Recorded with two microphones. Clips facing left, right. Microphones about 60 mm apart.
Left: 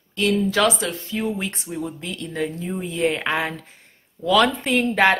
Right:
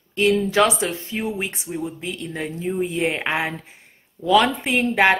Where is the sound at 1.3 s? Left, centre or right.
Centre.